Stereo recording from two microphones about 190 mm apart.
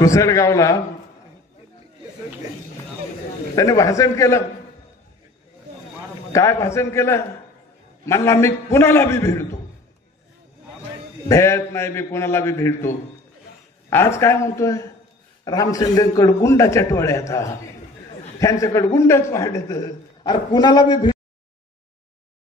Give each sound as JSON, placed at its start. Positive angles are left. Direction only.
{"t": 0.0, "sound": "a man's voice", "side_deg": 15}
{"t": 3.5, "sound": "a man's voice", "side_deg": 15}
{"t": 6.3, "sound": "a man's voice", "side_deg": 15}
{"t": 11.2, "sound": "a man's voice", "side_deg": 15}